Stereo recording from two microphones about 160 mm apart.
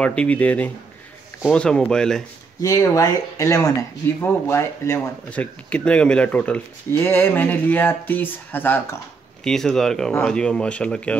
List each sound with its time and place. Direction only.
0.0 s speech: 5° left (ahead or behind)
2.6 s speech: 20° left (ahead or behind)